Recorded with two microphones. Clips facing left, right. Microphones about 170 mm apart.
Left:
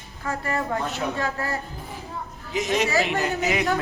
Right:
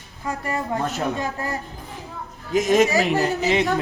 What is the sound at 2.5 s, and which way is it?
A man's voice, 45° right (ahead or behind).